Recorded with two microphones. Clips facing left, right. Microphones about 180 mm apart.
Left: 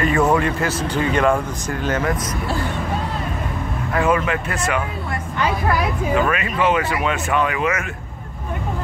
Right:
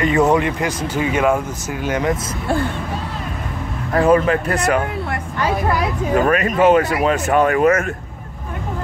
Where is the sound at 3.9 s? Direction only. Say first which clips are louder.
Right 5 dB; 35° right (ahead or behind).